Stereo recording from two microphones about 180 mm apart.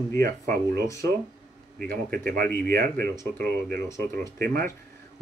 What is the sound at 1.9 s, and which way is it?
Speech, 55° right (ahead or behind).